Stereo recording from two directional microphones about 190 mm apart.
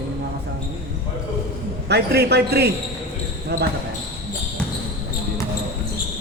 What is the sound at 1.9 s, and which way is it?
Speech, 60° right (ahead or behind).